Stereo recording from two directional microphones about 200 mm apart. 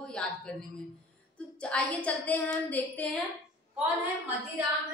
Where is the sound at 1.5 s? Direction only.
5° left (ahead or behind).